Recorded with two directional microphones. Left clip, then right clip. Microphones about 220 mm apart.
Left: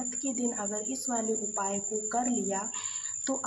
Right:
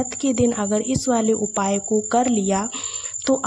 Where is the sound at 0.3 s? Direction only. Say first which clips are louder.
Right 14 dB; 40° right (ahead or behind).